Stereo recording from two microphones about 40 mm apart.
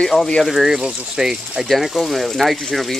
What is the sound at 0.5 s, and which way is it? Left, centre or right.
Speech, centre.